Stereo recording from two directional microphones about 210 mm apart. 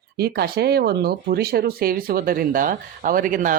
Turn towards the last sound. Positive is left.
turn(degrees=-40)  # may be behind; listen again after turning